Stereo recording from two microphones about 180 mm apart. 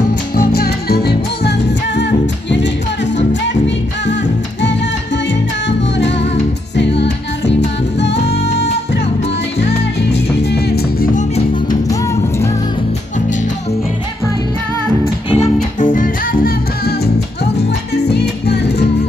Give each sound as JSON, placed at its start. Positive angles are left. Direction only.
{"t": 0.4, "sound": "music", "side_deg": 60}
{"t": 2.0, "sound": "music", "side_deg": 80}
{"t": 4.0, "sound": "music", "side_deg": 80}
{"t": 6.7, "sound": "music", "side_deg": 75}
{"t": 10.5, "sound": "music", "side_deg": 60}
{"t": 15.2, "sound": "music", "side_deg": 35}
{"t": 17.6, "sound": "music", "side_deg": 70}